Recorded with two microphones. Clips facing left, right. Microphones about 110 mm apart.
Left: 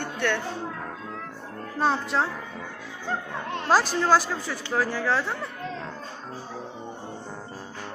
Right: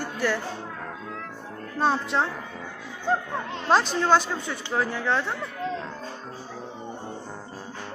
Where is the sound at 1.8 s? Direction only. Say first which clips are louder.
Right 1 dB; centre (ahead or behind).